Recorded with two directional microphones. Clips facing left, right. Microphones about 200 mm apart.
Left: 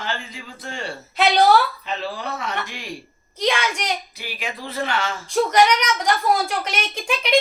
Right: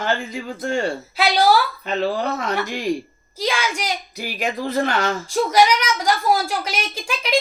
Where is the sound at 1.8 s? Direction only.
45° right (ahead or behind).